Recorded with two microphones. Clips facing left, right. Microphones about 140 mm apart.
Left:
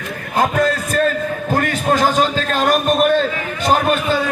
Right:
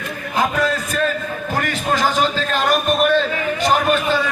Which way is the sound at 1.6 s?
45° left (ahead or behind).